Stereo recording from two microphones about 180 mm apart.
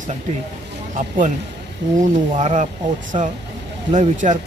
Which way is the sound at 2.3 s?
40° right (ahead or behind).